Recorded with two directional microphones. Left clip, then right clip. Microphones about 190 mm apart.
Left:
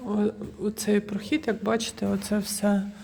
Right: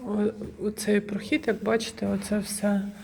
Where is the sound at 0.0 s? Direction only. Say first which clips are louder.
Even; 25° left (ahead or behind).